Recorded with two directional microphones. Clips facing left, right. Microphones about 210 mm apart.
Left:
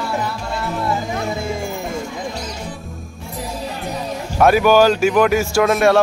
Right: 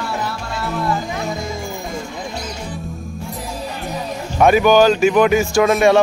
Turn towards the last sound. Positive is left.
turn(degrees=0)  # may be behind; listen again after turning